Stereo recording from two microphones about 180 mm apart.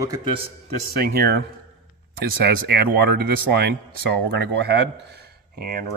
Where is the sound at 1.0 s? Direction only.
60° right (ahead or behind).